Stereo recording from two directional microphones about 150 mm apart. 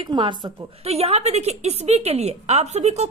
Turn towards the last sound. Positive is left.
turn(degrees=-45)  # may be behind; listen again after turning